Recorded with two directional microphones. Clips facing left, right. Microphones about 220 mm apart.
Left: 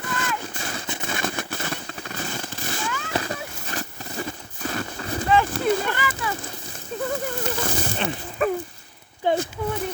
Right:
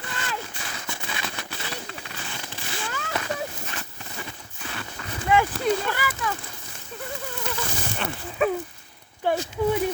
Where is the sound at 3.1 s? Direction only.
35° left (ahead or behind).